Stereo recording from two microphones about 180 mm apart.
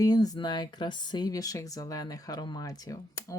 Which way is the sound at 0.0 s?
20° left (ahead or behind).